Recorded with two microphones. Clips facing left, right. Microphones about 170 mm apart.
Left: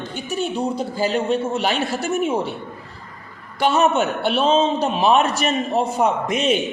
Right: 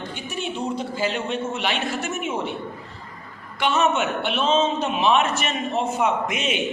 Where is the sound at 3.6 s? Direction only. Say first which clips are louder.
Left 4 dB; 35° left (ahead or behind).